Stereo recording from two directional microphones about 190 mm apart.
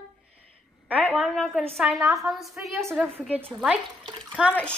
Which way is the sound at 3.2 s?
10° right (ahead or behind).